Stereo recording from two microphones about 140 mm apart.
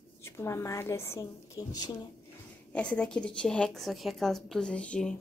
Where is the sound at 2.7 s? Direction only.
10° left (ahead or behind).